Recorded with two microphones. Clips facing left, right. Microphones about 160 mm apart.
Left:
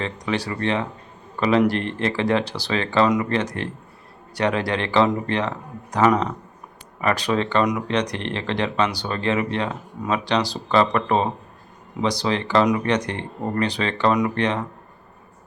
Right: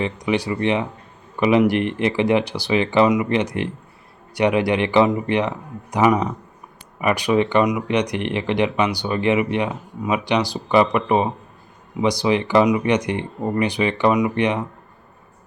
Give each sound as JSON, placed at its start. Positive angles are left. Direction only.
{"t": 0.0, "sound": "speech", "side_deg": -15}